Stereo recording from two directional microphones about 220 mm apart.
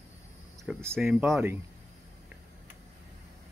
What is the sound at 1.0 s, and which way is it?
Speech, 5° right (ahead or behind).